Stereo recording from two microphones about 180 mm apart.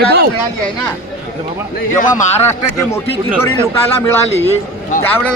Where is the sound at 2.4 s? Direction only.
15° left (ahead or behind).